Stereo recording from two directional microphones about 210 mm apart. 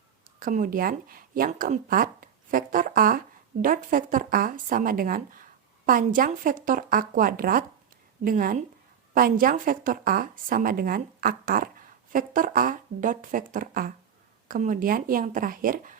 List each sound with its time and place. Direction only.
0.3 s a woman's voice: 40° right (ahead or behind)